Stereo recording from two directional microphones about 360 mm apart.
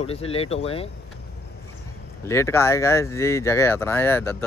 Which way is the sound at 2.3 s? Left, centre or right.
Centre.